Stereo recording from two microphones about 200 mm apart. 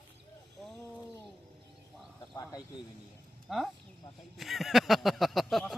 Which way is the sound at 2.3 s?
20° left (ahead or behind).